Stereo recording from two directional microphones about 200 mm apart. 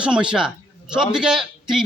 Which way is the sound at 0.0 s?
5° right (ahead or behind).